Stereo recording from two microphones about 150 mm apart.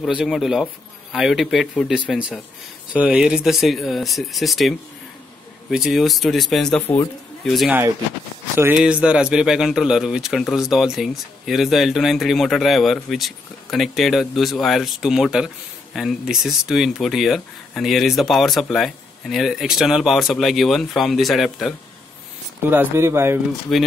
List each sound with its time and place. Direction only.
0.0 s a man's voice: centre (ahead or behind)
8.7 s a man's voice: 5° right (ahead or behind)
22.7 s speech: 15° right (ahead or behind)
23.7 s a man's voice: centre (ahead or behind)